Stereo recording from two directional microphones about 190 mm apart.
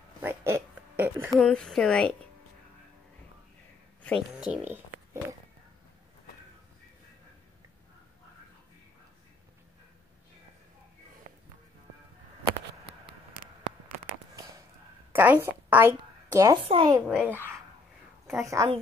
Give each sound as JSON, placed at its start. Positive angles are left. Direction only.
{"t": 0.2, "sound": "a sound", "side_deg": -15}
{"t": 1.3, "sound": "a woman's voice", "side_deg": 0}
{"t": 4.0, "sound": "speech", "side_deg": 0}
{"t": 15.1, "sound": "a sound", "side_deg": -10}
{"t": 16.6, "sound": "speech", "side_deg": -25}
{"t": 17.1, "sound": "a child's voice", "side_deg": -10}